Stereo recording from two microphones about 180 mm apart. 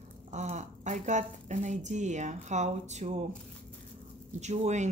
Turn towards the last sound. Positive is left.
turn(degrees=-40)  # may be behind; listen again after turning